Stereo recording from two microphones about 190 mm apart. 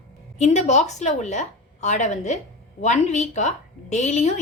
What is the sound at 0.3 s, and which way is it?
A woman's voice, 40° left (ahead or behind).